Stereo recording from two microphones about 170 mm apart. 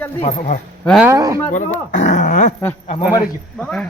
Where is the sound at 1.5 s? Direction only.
45° left (ahead or behind).